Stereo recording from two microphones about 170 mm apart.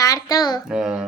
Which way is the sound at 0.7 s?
5° right (ahead or behind).